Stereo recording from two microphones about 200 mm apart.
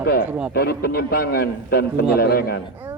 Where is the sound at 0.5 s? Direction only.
50° left (ahead or behind).